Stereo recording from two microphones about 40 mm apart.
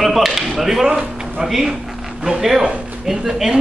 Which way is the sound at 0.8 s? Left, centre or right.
Right.